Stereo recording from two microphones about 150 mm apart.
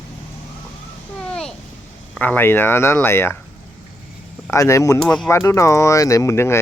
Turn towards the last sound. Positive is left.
turn(degrees=20)  # may be behind; listen again after turning